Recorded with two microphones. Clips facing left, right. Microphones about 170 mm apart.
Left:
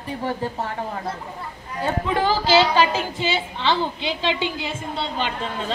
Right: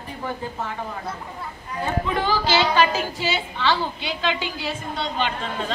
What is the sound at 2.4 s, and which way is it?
A woman's voice, 30° left (ahead or behind).